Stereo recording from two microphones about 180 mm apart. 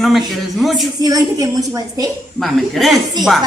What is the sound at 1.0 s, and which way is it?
A woman's voice, 20° right (ahead or behind).